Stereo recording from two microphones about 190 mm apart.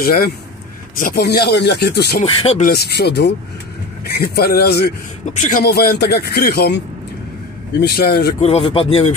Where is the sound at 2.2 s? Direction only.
30° left (ahead or behind).